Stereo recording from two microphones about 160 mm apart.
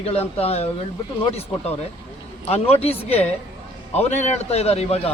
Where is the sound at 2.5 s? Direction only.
40° left (ahead or behind).